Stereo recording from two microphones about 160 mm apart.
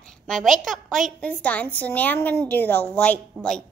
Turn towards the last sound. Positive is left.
turn(degrees=5)  # may be behind; listen again after turning